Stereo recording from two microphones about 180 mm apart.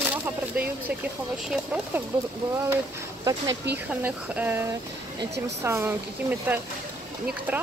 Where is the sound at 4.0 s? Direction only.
10° right (ahead or behind).